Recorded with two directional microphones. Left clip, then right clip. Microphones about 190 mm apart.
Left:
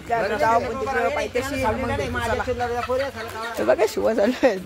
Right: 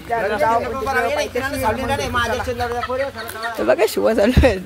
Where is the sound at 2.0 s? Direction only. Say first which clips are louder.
Right 4 dB; 60° right (ahead or behind).